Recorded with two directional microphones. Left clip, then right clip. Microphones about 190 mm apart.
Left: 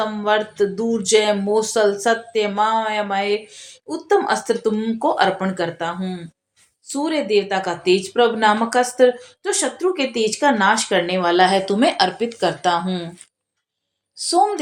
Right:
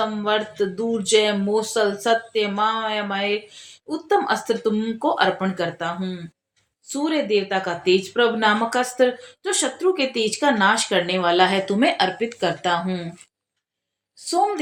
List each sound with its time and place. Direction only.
0.0 s speech: 30° left (ahead or behind)
14.3 s speech: 25° left (ahead or behind)